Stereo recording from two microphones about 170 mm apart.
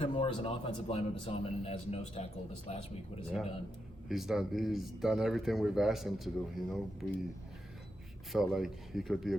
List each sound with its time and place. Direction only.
0.0 s a man's voice: 35° left (ahead or behind)
4.1 s speech: centre (ahead or behind)
8.3 s speech: centre (ahead or behind)